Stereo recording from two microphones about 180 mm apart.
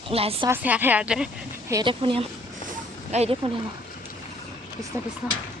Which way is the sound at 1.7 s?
25° right (ahead or behind).